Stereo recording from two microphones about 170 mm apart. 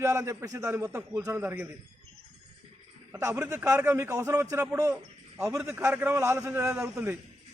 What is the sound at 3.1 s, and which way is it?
A man's voice, 20° right (ahead or behind).